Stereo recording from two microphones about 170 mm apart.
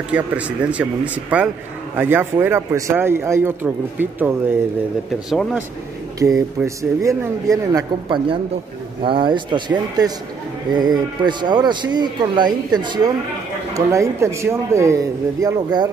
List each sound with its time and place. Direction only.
0.1 s speech: 5° right (ahead or behind)
5.3 s speech: centre (ahead or behind)
6.1 s speech: 20° right (ahead or behind)